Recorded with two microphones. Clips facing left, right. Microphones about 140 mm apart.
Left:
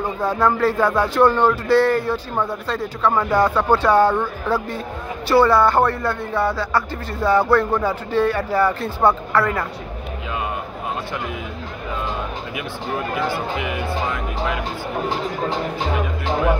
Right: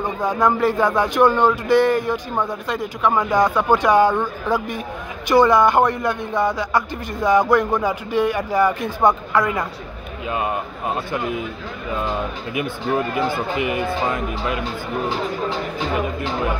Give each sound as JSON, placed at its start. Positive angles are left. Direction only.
{"t": 0.0, "sound": "speech", "side_deg": -15}
{"t": 13.7, "sound": "speech", "side_deg": -50}